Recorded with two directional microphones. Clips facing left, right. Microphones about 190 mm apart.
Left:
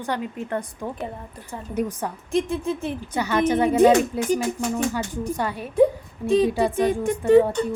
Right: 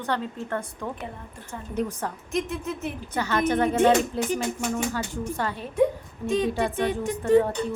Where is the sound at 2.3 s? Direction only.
30° left (ahead or behind).